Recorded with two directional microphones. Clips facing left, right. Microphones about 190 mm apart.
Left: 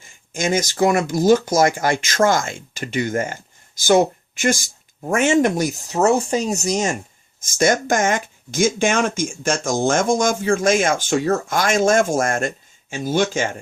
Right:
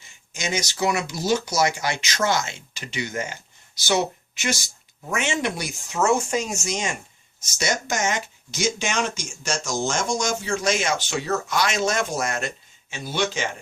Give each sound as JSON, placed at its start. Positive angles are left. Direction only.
{"t": 0.0, "sound": "speech", "side_deg": 50}
{"t": 7.4, "sound": "speech", "side_deg": 50}